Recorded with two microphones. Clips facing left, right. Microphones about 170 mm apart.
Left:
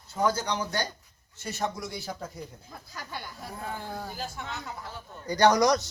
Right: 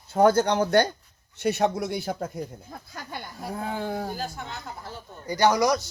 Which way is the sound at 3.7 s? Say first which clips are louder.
Right 8 dB; 80° right.